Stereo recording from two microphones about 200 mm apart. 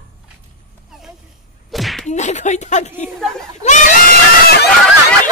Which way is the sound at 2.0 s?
35° left (ahead or behind).